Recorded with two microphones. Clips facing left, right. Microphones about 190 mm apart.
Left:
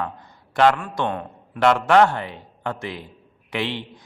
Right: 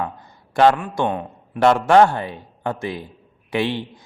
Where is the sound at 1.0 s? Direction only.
15° right (ahead or behind).